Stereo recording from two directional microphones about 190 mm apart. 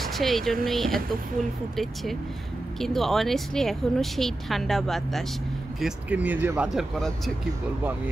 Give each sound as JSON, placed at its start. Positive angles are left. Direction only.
{"t": 0.0, "sound": "speech", "side_deg": 0}
{"t": 2.8, "sound": "speech", "side_deg": 0}